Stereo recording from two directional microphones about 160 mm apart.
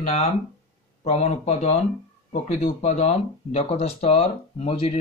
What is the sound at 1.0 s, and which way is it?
Speech, 45° left (ahead or behind).